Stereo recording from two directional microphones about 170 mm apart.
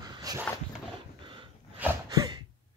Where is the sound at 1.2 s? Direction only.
30° right (ahead or behind).